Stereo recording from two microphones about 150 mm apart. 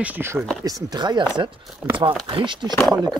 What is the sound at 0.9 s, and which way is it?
Speech, 30° right (ahead or behind).